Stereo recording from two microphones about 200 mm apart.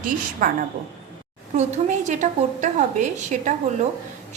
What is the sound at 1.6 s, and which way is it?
A woman's voice, 35° right (ahead or behind).